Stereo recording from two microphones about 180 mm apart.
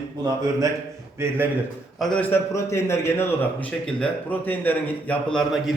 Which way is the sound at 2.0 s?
5° left (ahead or behind).